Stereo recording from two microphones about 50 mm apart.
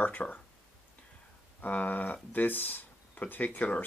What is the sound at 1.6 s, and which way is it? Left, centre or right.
Speech, left.